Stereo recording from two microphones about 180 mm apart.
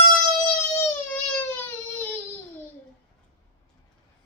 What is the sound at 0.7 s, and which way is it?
Baby cry, 10° left (ahead or behind).